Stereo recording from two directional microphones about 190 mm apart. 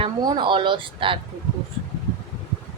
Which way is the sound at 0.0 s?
20° right (ahead or behind).